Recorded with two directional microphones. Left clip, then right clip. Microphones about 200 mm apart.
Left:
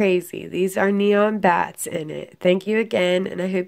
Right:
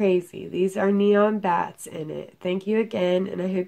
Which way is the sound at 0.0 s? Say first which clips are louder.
Left 2 dB; 45° left (ahead or behind).